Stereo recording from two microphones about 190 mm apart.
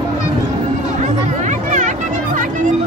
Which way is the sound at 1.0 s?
40° right (ahead or behind).